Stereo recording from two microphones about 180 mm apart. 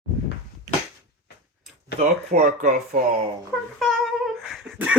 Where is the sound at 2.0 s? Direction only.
50° right (ahead or behind).